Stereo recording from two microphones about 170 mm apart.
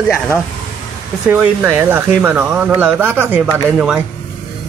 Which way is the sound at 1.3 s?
10° right (ahead or behind).